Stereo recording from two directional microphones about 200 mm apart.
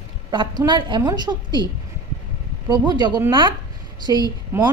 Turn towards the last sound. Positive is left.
turn(degrees=-10)  # may be behind; listen again after turning